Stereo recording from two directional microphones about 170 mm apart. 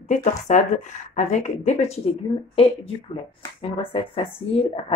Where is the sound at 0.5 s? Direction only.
45° left (ahead or behind).